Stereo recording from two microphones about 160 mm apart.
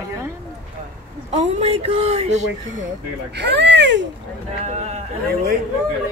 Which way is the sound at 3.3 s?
90° right.